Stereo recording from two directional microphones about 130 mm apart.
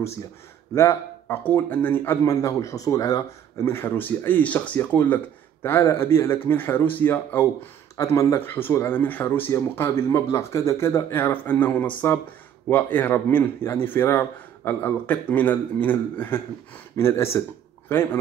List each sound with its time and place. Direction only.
0.7 s a man's voice: 20° left (ahead or behind)